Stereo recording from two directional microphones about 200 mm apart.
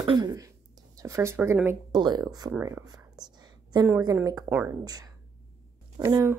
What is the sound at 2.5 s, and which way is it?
Whispering, 10° right (ahead or behind).